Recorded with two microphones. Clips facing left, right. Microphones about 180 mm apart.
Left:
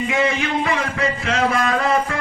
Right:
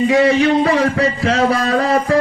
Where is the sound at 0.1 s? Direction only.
35° right (ahead or behind).